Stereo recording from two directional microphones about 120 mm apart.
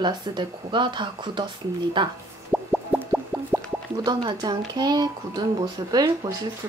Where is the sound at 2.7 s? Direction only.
5° right (ahead or behind).